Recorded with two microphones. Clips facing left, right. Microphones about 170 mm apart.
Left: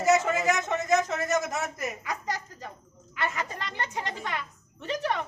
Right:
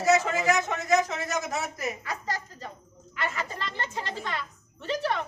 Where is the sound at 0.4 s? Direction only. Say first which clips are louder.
Right 2 dB; 20° left (ahead or behind).